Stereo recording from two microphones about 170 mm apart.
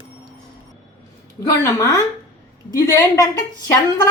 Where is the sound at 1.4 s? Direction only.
20° left (ahead or behind).